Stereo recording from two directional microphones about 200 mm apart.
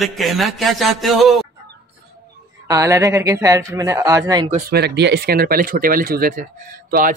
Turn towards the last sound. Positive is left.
turn(degrees=-45)  # may be behind; listen again after turning